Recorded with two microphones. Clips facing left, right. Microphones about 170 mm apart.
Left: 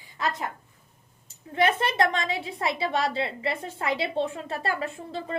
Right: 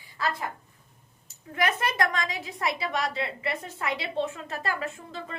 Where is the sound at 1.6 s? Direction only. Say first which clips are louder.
Left 3 dB; 25° left (ahead or behind).